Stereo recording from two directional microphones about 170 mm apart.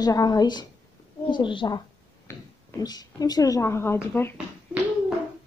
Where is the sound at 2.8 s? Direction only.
20° left (ahead or behind).